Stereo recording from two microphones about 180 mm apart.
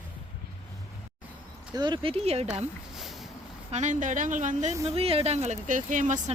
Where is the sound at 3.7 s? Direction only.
45° right (ahead or behind).